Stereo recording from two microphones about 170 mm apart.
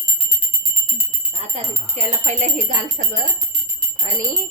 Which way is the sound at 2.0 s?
40° right (ahead or behind).